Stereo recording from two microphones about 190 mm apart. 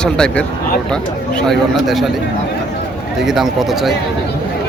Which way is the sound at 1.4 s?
Centre (ahead or behind).